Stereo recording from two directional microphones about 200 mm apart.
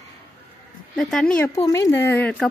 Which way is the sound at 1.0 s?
Centre (ahead or behind).